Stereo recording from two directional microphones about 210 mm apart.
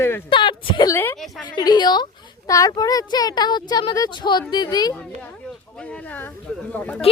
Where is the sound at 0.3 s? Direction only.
25° left (ahead or behind).